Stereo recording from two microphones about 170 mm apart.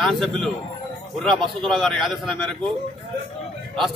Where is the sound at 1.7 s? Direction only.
Centre (ahead or behind).